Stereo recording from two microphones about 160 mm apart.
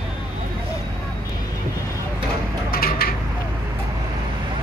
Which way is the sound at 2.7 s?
65° left (ahead or behind).